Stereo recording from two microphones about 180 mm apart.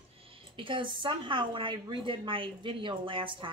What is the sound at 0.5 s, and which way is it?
A woman's voice, 30° right (ahead or behind).